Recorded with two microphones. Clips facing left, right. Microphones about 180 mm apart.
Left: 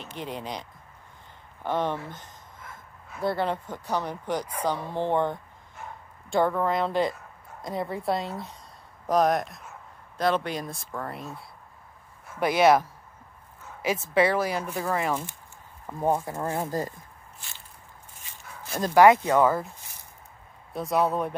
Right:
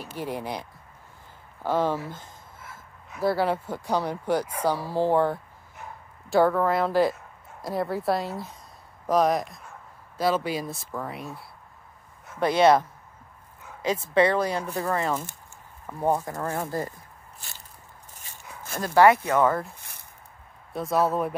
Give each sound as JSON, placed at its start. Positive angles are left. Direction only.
{"t": 0.0, "sound": "speech", "side_deg": -10}
{"t": 1.6, "sound": "a sound", "side_deg": -10}
{"t": 3.2, "sound": "a woman's voice", "side_deg": -5}
{"t": 14.1, "sound": "speech", "side_deg": 5}
{"t": 18.8, "sound": "speech", "side_deg": 20}
{"t": 20.7, "sound": "a woman's voice", "side_deg": 0}